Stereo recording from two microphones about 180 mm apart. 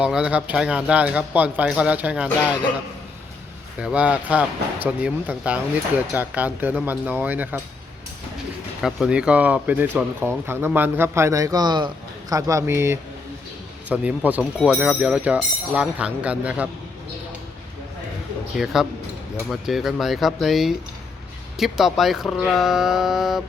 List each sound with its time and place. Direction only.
0.0 s speech: 5° right (ahead or behind)
3.8 s speech: 5° right (ahead or behind)
8.8 s speech: 5° right (ahead or behind)
18.5 s speech: centre (ahead or behind)